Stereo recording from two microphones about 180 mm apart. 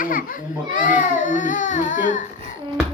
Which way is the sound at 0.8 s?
45° left (ahead or behind).